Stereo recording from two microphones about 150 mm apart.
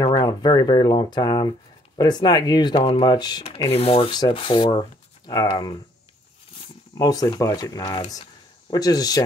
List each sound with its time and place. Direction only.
0.0 s speech: 25° left (ahead or behind)
3.4 s rub: 40° left (ahead or behind)
4.2 s speech: 35° left (ahead or behind)
7.0 s speech: 25° left (ahead or behind)